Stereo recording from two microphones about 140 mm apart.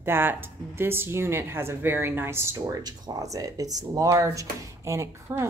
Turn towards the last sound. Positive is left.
turn(degrees=-20)  # may be behind; listen again after turning